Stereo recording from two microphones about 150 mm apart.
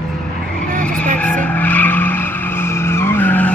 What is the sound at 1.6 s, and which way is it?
Skidding, 10° left (ahead or behind).